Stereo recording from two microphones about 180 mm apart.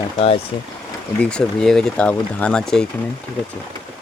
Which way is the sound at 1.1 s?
5° left (ahead or behind).